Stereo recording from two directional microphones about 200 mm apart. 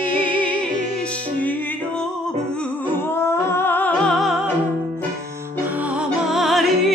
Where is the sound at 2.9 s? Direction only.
10° left (ahead or behind).